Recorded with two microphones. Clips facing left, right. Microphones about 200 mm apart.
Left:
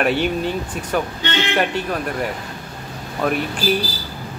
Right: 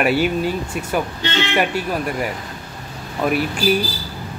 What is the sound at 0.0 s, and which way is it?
Speech, 10° right (ahead or behind).